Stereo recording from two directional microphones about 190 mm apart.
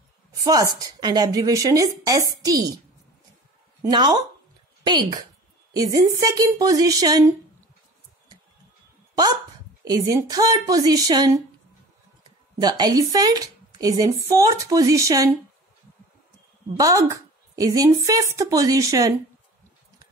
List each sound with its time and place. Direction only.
0.4 s a woman's voice: 20° right (ahead or behind)
3.9 s a woman's voice: 20° right (ahead or behind)
9.8 s a woman's voice: 20° right (ahead or behind)
16.7 s a woman's voice: 15° right (ahead or behind)